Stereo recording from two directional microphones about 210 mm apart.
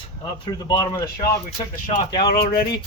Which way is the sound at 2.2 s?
45° left (ahead or behind).